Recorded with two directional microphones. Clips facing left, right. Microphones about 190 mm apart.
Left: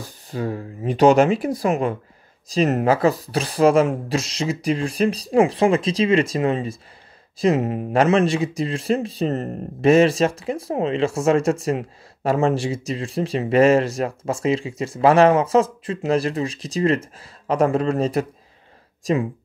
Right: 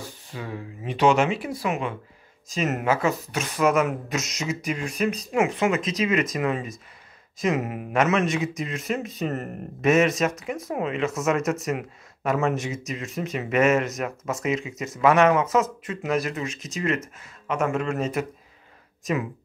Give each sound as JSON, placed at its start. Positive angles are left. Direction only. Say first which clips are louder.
{"t": 0.3, "sound": "speech", "louder": "left 9 dB", "side_deg": 40}